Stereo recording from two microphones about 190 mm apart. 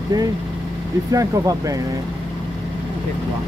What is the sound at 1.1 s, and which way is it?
Speech, 15° right (ahead or behind).